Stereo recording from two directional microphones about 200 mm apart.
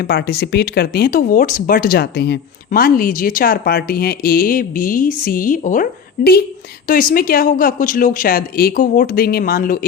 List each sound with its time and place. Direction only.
0.0 s speech: 50° left (ahead or behind)